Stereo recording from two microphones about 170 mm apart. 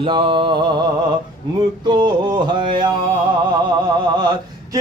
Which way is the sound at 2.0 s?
25° right (ahead or behind).